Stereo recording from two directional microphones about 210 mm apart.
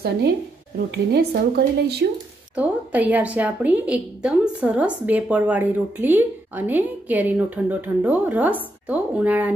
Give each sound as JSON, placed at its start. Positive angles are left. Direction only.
{"t": 0.9, "sound": "a woman's voice", "side_deg": -50}
{"t": 2.5, "sound": "a woman's voice", "side_deg": -5}